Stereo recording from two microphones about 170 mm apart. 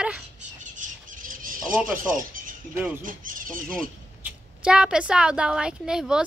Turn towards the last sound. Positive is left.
turn(degrees=-5)  # may be behind; listen again after turning